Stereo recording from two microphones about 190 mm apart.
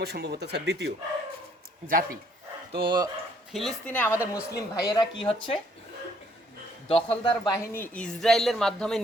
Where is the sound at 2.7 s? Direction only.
25° right (ahead or behind).